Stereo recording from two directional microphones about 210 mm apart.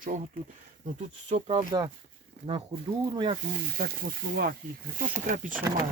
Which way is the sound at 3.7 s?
45° right (ahead or behind).